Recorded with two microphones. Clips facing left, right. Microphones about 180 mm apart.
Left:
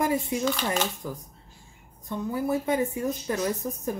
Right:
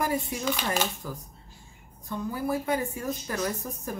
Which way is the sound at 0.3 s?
20° left (ahead or behind).